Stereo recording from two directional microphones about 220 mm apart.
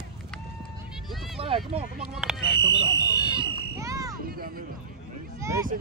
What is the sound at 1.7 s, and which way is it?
Speech, 25° right (ahead or behind).